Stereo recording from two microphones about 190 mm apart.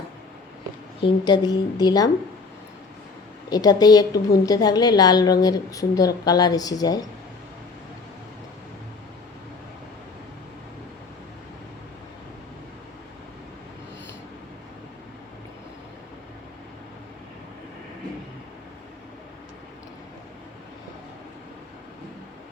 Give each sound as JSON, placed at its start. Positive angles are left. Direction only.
{"t": 1.0, "sound": "a woman's voice", "side_deg": 20}
{"t": 3.5, "sound": "a woman's voice", "side_deg": 20}